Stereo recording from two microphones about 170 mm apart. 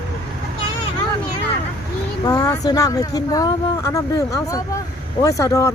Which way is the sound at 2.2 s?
20° left (ahead or behind).